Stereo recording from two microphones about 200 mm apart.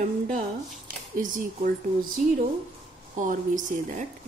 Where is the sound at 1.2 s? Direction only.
40° right (ahead or behind).